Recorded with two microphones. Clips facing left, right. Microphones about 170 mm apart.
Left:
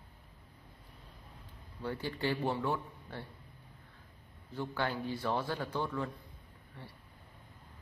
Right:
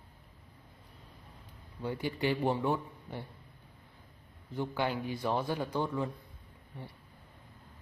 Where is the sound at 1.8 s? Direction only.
15° right (ahead or behind).